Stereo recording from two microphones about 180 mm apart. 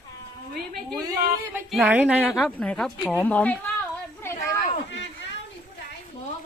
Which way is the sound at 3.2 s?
10° left (ahead or behind).